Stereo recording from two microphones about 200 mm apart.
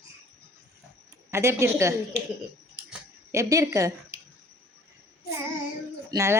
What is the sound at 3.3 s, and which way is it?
Speech, 15° right (ahead or behind).